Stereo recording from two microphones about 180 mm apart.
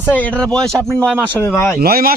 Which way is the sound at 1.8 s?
55° right (ahead or behind).